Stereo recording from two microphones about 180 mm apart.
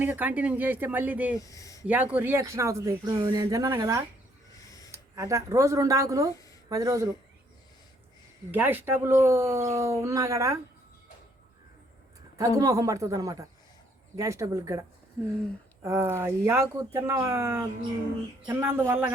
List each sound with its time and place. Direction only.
0.0 s speech: 10° right (ahead or behind)
1.4 s speech: 20° left (ahead or behind)
1.9 s speech: 10° right (ahead or behind)
8.4 s speech: 10° right (ahead or behind)
12.4 s a man's voice: 20° right (ahead or behind)